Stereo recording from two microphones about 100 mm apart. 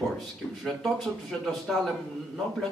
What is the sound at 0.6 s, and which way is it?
Speech, centre (ahead or behind).